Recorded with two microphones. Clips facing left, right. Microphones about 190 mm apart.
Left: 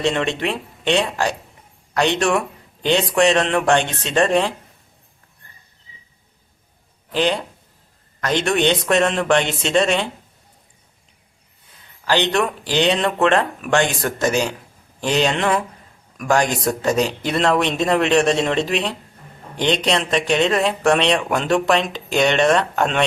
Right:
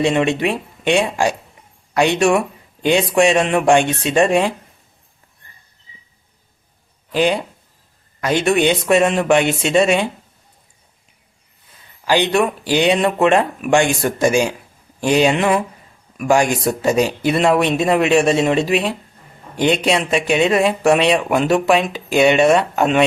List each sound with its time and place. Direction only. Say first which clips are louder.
0.0 s a man's voice: right 4 dB; 10° right (ahead or behind)
7.1 s speech: right 3 dB; 10° right (ahead or behind)
12.0 s speech: right 3 dB; 10° right (ahead or behind)